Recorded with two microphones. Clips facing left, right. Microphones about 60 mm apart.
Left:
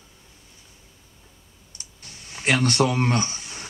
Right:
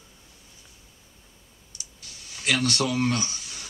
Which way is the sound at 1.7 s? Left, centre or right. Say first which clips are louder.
Left 1 dB; left.